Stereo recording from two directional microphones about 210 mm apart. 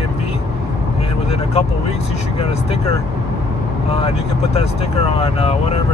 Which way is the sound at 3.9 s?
30° left (ahead or behind).